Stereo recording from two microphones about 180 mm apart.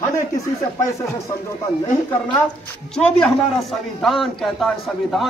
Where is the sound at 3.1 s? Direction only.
Centre (ahead or behind).